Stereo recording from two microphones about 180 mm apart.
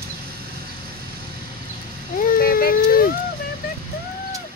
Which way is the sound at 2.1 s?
50° left (ahead or behind).